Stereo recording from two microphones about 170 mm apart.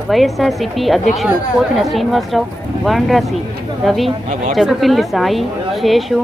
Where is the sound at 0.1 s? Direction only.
Centre (ahead or behind).